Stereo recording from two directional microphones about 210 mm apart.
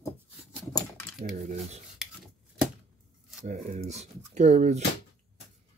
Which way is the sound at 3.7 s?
30° right (ahead or behind).